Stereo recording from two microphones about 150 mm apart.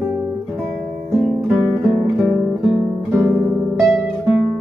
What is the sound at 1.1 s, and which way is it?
Music, 5° right (ahead or behind).